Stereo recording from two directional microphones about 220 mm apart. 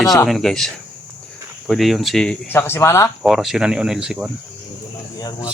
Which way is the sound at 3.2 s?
Centre (ahead or behind).